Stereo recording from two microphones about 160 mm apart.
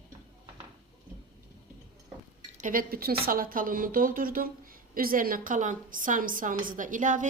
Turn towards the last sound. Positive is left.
turn(degrees=-55)  # may be behind; listen again after turning